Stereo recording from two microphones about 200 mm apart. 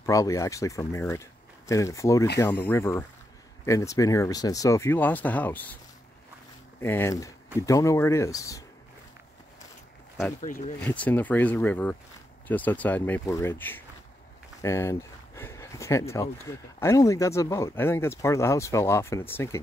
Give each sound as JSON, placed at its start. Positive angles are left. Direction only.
{"t": 0.0, "sound": "speech", "side_deg": 15}
{"t": 6.8, "sound": "speech", "side_deg": 10}
{"t": 10.8, "sound": "speech", "side_deg": 5}